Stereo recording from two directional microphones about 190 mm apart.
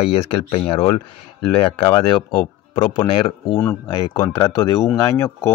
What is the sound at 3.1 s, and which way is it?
Speech, 30° left (ahead or behind).